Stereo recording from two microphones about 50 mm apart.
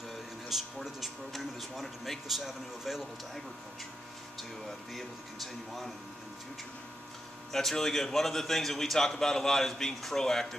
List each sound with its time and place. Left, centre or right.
0.1 s speech: centre
4.4 s speech: centre
7.5 s a man's voice: centre